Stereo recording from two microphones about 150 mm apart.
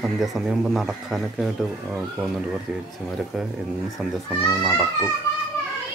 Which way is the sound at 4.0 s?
Centre (ahead or behind).